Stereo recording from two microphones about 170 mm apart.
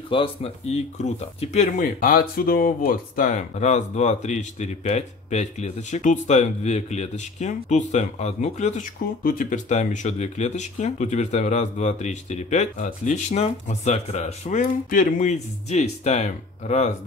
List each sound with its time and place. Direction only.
0.1 s speech: 35° left (ahead or behind)
14.6 s speech: 55° left (ahead or behind)